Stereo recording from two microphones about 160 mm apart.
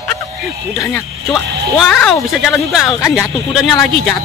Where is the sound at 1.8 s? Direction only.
5° left (ahead or behind).